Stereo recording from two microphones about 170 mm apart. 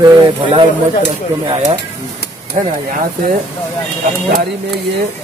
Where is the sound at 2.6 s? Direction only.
45° right (ahead or behind).